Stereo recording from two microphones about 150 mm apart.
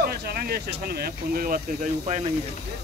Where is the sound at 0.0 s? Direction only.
90° right; by 1.9 s 70° right (ahead or behind).